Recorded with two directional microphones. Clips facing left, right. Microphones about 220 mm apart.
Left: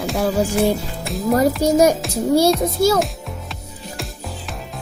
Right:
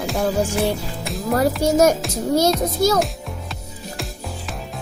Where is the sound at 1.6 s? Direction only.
10° left (ahead or behind).